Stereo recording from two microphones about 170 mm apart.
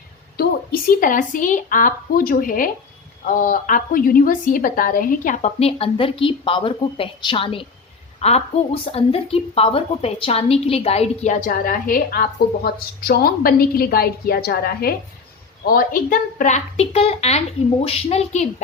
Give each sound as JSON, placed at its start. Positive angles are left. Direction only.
{"t": 0.3, "sound": "a woman's voice", "side_deg": 55}